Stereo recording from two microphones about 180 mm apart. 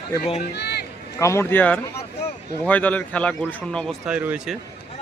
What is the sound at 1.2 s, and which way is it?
A man's voice, 15° left (ahead or behind).